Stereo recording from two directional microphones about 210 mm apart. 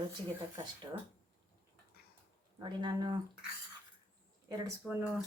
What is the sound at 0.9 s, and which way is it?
Speech, 15° right (ahead or behind).